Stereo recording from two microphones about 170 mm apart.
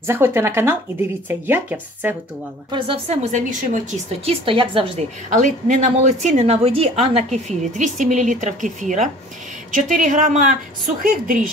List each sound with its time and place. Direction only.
0.0 s speech: 15° right (ahead or behind)
2.7 s a woman's voice: 35° right (ahead or behind)
4.3 s a woman's voice: 30° right (ahead or behind)
5.3 s a woman's voice: 45° right (ahead or behind)